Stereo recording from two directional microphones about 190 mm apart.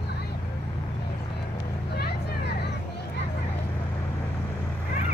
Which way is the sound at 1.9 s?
60° left (ahead or behind).